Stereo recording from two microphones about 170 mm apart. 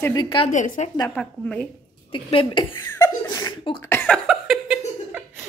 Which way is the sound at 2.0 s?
30° left (ahead or behind).